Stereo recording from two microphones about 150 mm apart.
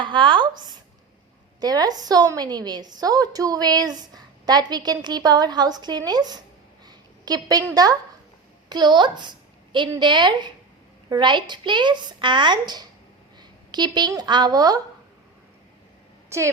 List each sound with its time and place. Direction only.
0.0 s a woman's voice: 30° right (ahead or behind)
6.8 s a sound: 25° right (ahead or behind)
7.7 s a woman's voice: 25° right (ahead or behind)
16.3 s a woman's voice: 20° right (ahead or behind)